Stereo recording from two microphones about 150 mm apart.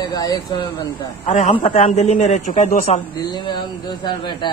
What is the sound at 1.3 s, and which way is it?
A man's voice, 50° left (ahead or behind).